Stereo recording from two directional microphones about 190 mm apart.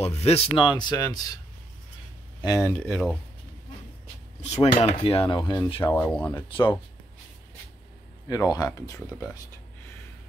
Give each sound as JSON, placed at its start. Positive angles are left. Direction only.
{"t": 0.0, "sound": "speech", "side_deg": 35}
{"t": 2.4, "sound": "speech", "side_deg": 15}
{"t": 4.4, "sound": "speech", "side_deg": 30}
{"t": 5.9, "sound": "speech", "side_deg": 10}
{"t": 8.3, "sound": "speech", "side_deg": 20}